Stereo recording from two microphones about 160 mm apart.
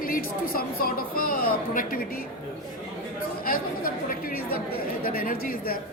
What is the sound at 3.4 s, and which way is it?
Chatter, 65° left (ahead or behind).